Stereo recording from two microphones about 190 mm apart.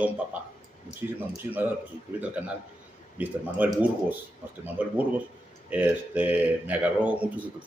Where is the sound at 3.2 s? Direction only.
10° right (ahead or behind).